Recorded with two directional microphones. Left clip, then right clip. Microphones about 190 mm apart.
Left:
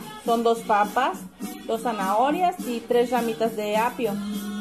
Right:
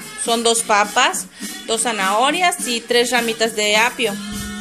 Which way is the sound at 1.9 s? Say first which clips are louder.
Right 5 dB; 15° right (ahead or behind).